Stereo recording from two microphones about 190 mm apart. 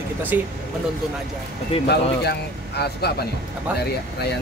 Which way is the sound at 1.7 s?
30° left (ahead or behind).